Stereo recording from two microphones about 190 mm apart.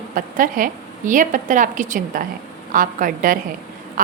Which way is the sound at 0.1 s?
45° right (ahead or behind).